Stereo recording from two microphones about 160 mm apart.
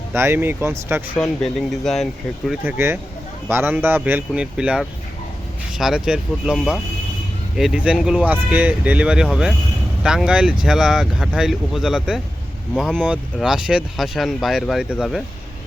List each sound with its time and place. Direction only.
0.1 s speech: 15° right (ahead or behind)
1.2 s speech: centre (ahead or behind)
2.6 s speech: 15° right (ahead or behind)